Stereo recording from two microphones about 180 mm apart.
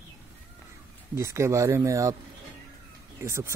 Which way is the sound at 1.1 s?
15° right (ahead or behind).